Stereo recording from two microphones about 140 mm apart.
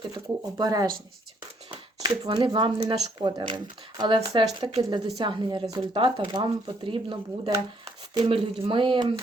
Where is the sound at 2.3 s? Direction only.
35° right (ahead or behind).